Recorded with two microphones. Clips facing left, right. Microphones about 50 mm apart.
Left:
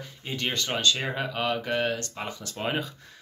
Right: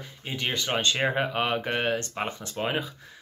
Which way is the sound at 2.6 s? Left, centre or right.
Centre.